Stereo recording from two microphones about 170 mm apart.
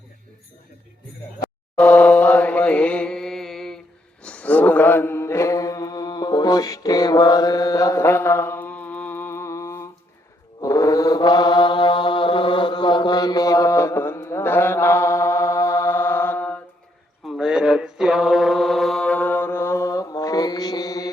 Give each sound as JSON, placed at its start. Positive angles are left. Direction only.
{"t": 1.7, "sound": "chant", "side_deg": 5}
{"t": 4.2, "sound": "mantra", "side_deg": 5}
{"t": 17.2, "sound": "mantra", "side_deg": -5}